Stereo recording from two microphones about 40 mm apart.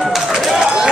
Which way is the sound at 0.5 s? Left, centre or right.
Centre.